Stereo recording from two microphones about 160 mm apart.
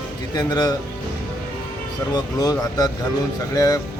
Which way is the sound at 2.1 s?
25° left (ahead or behind).